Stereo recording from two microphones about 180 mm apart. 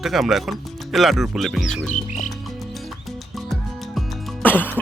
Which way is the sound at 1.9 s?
45° left (ahead or behind).